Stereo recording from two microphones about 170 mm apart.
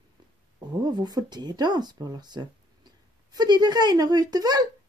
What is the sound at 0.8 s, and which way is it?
Speech, 25° right (ahead or behind).